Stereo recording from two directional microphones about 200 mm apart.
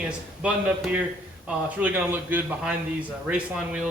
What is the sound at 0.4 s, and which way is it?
A man's voice, 5° right (ahead or behind).